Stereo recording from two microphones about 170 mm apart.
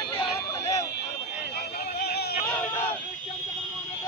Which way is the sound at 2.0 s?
70° left (ahead or behind).